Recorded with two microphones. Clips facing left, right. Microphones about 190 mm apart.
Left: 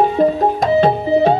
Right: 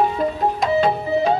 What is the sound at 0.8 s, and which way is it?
Music, 35° left (ahead or behind).